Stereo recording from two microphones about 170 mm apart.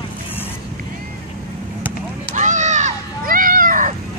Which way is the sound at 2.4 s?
45° right (ahead or behind).